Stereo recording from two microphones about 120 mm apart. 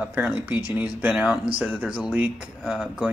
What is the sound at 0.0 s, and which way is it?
Speech, 15° right (ahead or behind).